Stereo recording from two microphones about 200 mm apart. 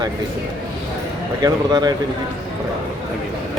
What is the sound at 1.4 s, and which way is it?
Speech, 20° right (ahead or behind).